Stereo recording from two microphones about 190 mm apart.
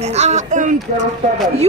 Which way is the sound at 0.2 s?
40° right (ahead or behind).